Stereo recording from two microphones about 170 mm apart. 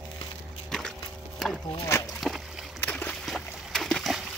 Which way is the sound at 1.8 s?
15° left (ahead or behind).